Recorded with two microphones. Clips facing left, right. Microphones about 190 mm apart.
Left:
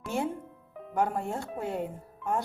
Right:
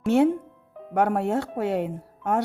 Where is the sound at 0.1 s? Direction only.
70° right (ahead or behind).